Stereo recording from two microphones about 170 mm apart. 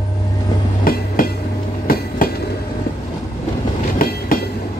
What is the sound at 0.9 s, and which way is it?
Train, 55° left (ahead or behind).